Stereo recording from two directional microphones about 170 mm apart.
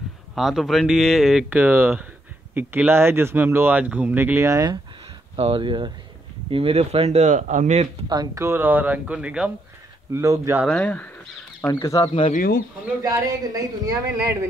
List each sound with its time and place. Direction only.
0.4 s speech: centre (ahead or behind); by 4.7 s 20° right (ahead or behind)
5.3 s speech: 35° right (ahead or behind)
8.1 s speech: 20° right (ahead or behind); by 9.5 s 5° right (ahead or behind)
10.1 s speech: 15° right (ahead or behind)
10.7 s speech: 10° left (ahead or behind)
12.1 s speech: 35° left (ahead or behind)
12.4 s speech: 60° left (ahead or behind)
13.0 s speech: 20° right (ahead or behind)